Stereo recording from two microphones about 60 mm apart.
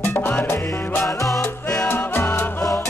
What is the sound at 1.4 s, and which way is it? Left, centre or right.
Music, left.